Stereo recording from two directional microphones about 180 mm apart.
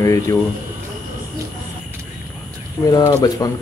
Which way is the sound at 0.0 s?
15° left (ahead or behind).